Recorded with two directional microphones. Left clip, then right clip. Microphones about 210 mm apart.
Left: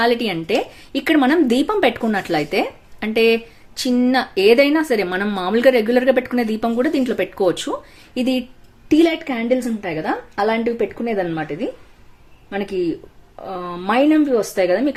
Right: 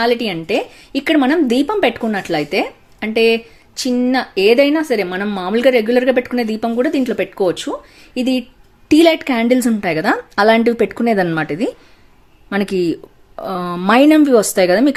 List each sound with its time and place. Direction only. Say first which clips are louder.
0.0 s a woman's voice: right 2 dB; 10° right (ahead or behind)
8.9 s a woman's voice: right 5 dB; 30° right (ahead or behind)